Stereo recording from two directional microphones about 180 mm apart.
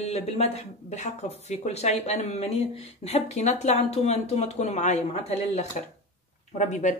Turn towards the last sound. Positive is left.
turn(degrees=40)  # may be behind; listen again after turning